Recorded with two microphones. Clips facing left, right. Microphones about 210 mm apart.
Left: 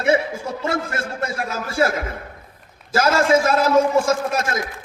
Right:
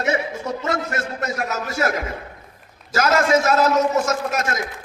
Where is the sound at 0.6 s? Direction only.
30° left (ahead or behind).